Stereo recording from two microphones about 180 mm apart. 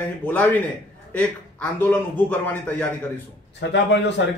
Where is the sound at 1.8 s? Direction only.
10° left (ahead or behind).